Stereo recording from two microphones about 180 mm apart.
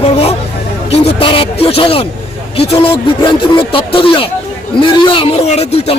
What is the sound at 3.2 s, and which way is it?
Speech, 30° left (ahead or behind).